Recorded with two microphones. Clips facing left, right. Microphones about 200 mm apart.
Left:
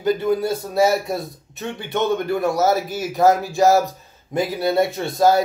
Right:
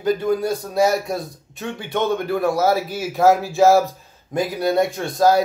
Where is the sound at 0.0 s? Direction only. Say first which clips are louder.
Even; 5° left (ahead or behind).